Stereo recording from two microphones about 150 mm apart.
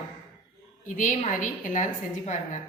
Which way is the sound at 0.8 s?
60° left (ahead or behind).